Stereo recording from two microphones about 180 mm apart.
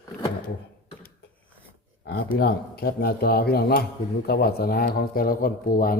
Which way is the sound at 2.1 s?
55° left (ahead or behind).